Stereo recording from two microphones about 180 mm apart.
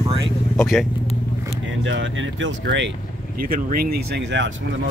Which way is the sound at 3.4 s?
55° right (ahead or behind).